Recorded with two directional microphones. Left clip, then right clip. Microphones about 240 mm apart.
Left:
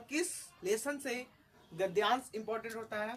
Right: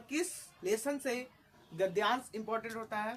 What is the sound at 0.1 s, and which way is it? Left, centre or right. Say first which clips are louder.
A woman's voice: even; centre.